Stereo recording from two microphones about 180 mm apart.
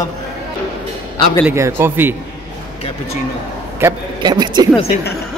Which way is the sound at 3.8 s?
10° right (ahead or behind).